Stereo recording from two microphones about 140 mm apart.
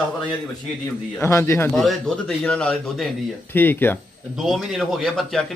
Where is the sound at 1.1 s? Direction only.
20° left (ahead or behind).